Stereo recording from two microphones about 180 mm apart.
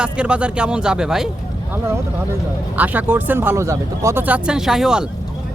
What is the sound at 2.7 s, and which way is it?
Speech, 10° right (ahead or behind).